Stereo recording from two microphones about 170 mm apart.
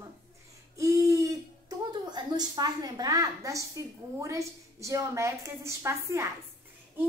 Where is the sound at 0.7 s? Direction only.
20° right (ahead or behind).